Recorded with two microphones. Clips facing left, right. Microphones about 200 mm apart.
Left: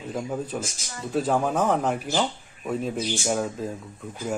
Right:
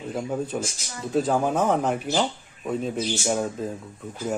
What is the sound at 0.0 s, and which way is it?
A man's voice, centre (ahead or behind).